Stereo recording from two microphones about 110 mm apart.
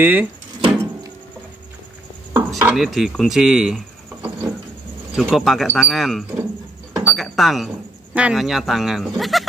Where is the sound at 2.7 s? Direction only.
Centre (ahead or behind).